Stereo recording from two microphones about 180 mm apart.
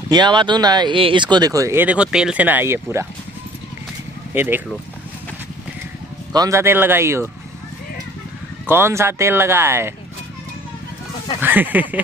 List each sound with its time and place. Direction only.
0.1 s speech: 25° right (ahead or behind)
4.3 s speech: 10° right (ahead or behind)
6.3 s speech: 20° right (ahead or behind)
8.6 s speech: 15° right (ahead or behind)
11.4 s speech: 10° right (ahead or behind)